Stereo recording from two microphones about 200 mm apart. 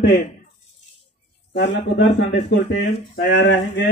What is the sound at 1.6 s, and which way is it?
A man's voice, 60° left (ahead or behind).